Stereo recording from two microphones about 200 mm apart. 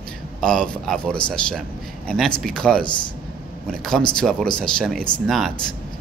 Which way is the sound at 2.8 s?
25° left (ahead or behind).